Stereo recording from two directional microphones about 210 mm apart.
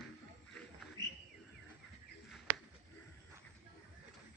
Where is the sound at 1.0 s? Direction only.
20° right (ahead or behind).